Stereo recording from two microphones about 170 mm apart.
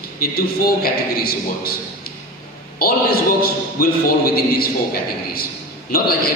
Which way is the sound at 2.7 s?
65° left (ahead or behind).